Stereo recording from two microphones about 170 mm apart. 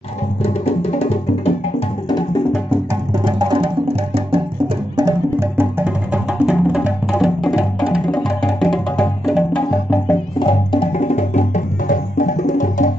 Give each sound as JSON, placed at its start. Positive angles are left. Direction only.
{"t": 0.4, "sound": "music", "side_deg": 35}
{"t": 3.3, "sound": "music", "side_deg": -25}
{"t": 4.9, "sound": "music", "side_deg": -20}
{"t": 10.4, "sound": "music", "side_deg": 30}
{"t": 10.9, "sound": "music", "side_deg": 40}